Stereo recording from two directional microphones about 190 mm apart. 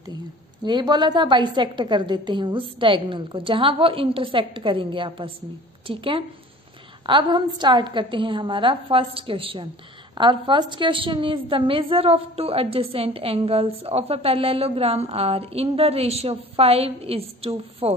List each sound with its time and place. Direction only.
0.7 s a woman's voice: 25° right (ahead or behind)